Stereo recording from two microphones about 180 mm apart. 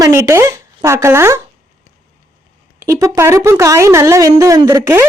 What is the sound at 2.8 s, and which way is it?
Speech, 20° right (ahead or behind).